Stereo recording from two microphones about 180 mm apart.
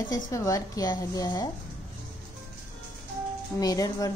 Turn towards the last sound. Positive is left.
turn(degrees=20)  # may be behind; listen again after turning